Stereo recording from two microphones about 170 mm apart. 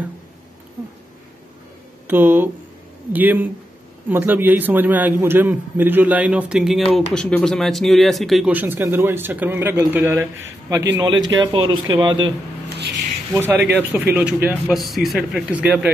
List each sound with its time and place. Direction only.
2.0 s a man's voice: 10° right (ahead or behind)
6.8 s speech: 35° left (ahead or behind)
7.2 s speech: 5° left (ahead or behind)
8.5 s a man's voice: 10° right (ahead or behind)
11.2 s speech: 25° right (ahead or behind)
12.6 s a sound: 75° right (ahead or behind)
13.3 s a man's voice: 10° right (ahead or behind)